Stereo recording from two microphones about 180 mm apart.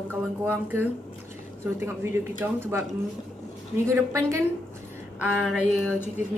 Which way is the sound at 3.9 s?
15° right (ahead or behind).